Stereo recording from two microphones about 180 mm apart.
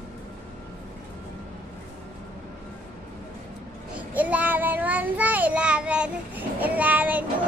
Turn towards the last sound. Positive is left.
turn(degrees=-10)  # may be behind; listen again after turning